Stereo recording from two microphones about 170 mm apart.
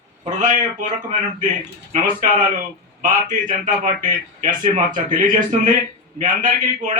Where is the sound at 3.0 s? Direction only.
50° right (ahead or behind).